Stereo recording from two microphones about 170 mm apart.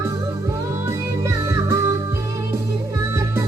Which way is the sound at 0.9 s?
15° right (ahead or behind).